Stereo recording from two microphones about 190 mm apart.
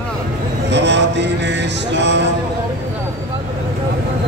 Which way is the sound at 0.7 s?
65° right (ahead or behind).